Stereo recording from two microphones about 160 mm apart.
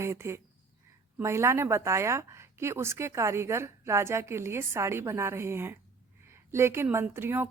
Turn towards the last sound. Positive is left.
turn(degrees=-15)  # may be behind; listen again after turning